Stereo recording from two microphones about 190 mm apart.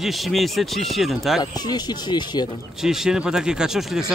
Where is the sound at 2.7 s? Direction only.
Centre (ahead or behind).